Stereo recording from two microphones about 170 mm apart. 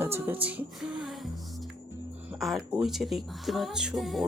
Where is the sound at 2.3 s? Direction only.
Centre (ahead or behind).